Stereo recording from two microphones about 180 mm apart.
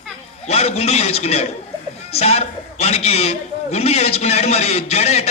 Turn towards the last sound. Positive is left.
turn(degrees=35)  # may be behind; listen again after turning